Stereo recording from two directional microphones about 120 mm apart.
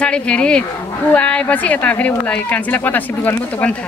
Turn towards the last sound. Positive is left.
turn(degrees=15)  # may be behind; listen again after turning